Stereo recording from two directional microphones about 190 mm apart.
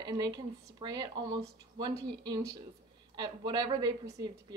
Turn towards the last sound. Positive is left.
turn(degrees=-20)  # may be behind; listen again after turning